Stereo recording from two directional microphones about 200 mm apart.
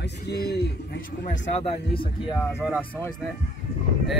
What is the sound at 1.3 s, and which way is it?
Speech, 40° left (ahead or behind).